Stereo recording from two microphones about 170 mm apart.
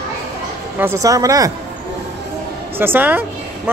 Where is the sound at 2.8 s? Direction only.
10° right (ahead or behind).